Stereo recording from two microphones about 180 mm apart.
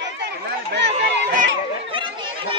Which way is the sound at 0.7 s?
70° right (ahead or behind).